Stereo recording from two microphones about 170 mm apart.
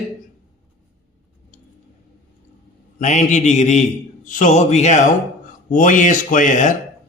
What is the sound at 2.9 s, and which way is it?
Speech, 45° left (ahead or behind).